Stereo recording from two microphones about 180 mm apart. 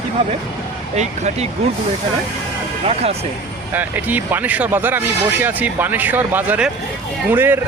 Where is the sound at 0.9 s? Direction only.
40° right (ahead or behind).